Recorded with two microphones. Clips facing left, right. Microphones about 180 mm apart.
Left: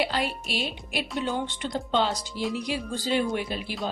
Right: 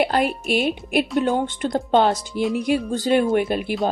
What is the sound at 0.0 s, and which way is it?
A woman's voice, 50° right (ahead or behind).